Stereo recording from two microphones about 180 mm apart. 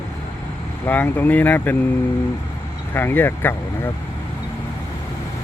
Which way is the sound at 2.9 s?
10° left (ahead or behind).